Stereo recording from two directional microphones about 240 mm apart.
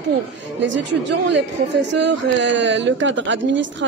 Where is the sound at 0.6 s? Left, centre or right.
Right.